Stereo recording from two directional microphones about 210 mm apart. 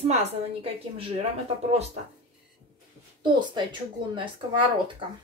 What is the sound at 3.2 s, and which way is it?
A woman's voice, 20° right (ahead or behind).